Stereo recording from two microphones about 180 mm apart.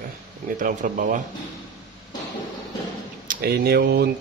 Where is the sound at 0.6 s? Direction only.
45° right (ahead or behind).